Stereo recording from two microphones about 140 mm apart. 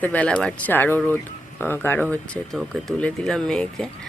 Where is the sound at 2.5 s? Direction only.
Centre (ahead or behind).